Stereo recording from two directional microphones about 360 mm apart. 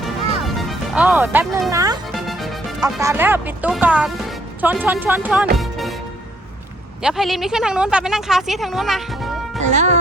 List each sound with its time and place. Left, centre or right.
0.0 s music: centre
7.0 s speech: centre
9.6 s speech: centre